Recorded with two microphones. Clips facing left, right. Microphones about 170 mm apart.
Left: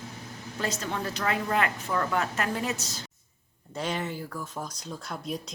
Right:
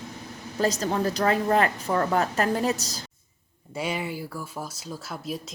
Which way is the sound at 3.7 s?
10° right (ahead or behind).